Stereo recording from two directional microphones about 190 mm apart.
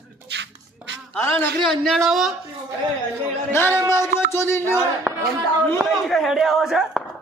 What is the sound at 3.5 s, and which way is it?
Speech, 10° left (ahead or behind).